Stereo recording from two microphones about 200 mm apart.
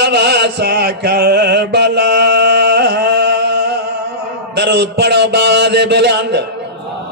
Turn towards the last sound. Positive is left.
turn(degrees=-55)  # may be behind; listen again after turning